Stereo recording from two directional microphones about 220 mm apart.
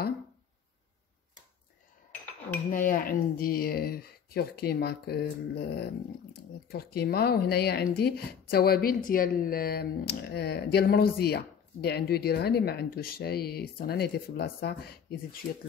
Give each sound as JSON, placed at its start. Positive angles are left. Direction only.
{"t": 2.7, "sound": "speech", "side_deg": 40}